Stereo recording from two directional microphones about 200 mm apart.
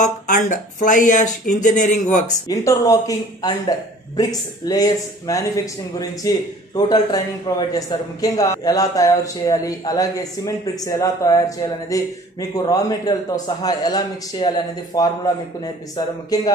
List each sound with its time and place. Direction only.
0.0 s speech: 40° left (ahead or behind)
2.4 s a man's voice: 15° left (ahead or behind)
16.3 s speech: 20° left (ahead or behind)